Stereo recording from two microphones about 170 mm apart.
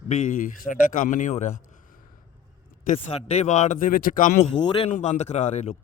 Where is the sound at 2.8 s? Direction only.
40° left (ahead or behind).